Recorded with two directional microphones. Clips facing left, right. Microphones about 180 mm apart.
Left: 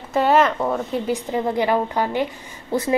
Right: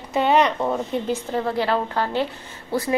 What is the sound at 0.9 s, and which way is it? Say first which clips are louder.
A woman's voice: left 1 dB; 10° left (ahead or behind).